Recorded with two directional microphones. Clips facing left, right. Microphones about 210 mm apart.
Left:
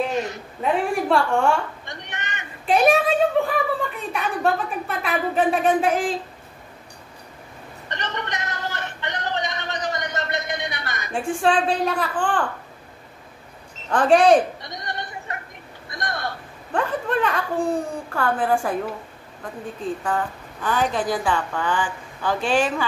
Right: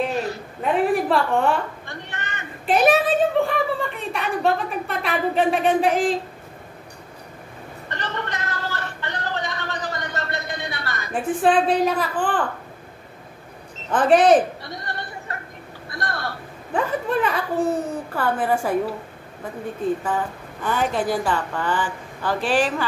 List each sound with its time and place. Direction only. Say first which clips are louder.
0.1 s a sound: even; 20° left (ahead or behind)
1.0 s a woman's voice: even; centre (ahead or behind)
1.9 s speech: right 1 dB; 20° left (ahead or behind)
2.6 s a woman's voice: even; centre (ahead or behind)
7.9 s a sound: even; 20° left (ahead or behind)
11.1 s a woman's voice: right 2 dB; 5° right (ahead or behind)
13.8 s a woman's voice: even; 5° right (ahead or behind)
14.6 s a sound: even; 20° left (ahead or behind)
15.9 s speech: even; 20° left (ahead or behind)
16.7 s a woman's voice: right 1 dB; 5° right (ahead or behind)
20.0 s a woman's voice: even; 5° right (ahead or behind)